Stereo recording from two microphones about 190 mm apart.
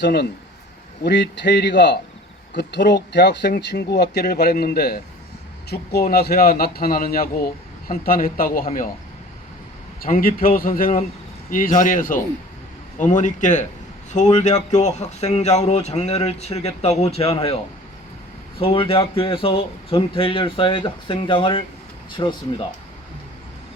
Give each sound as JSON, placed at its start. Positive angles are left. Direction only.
{"t": 0.0, "sound": "a man's voice", "side_deg": 60}
{"t": 10.0, "sound": "a man's voice", "side_deg": 50}
{"t": 18.6, "sound": "speech", "side_deg": 30}